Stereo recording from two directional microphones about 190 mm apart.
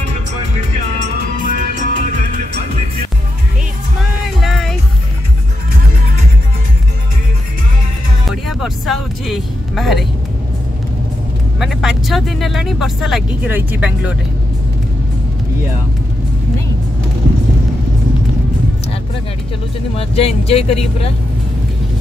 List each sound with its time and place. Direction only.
1.4 s music: 45° right (ahead or behind)
4.4 s music: centre (ahead or behind)
8.3 s music: centre (ahead or behind)
11.6 s speech: centre (ahead or behind)
20.0 s speech: 30° left (ahead or behind)